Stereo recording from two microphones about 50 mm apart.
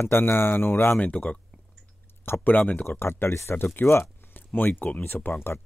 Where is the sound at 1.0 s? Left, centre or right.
Left.